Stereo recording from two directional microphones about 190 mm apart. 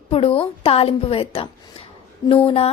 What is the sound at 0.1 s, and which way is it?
A woman's voice, 30° left (ahead or behind).